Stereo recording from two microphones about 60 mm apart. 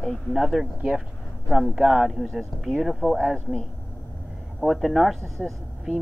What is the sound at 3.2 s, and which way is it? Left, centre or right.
Speech, centre.